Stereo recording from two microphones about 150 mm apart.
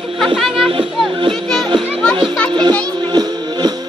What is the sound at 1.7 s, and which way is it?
Children playing, 30° right (ahead or behind).